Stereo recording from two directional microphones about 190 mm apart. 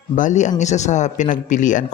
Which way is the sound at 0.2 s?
40° left (ahead or behind).